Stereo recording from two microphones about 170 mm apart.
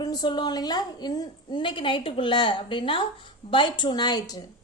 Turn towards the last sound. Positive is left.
turn(degrees=25)  # may be behind; listen again after turning